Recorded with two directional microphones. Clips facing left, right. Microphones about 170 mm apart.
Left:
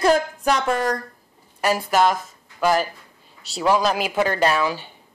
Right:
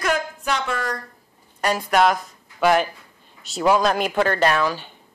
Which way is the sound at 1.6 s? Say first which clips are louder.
Even; 5° left (ahead or behind).